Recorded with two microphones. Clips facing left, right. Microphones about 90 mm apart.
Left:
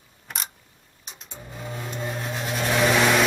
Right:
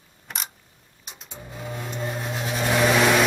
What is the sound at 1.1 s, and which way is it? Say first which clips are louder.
Vehicle: right 1 dB; 5° right (ahead or behind).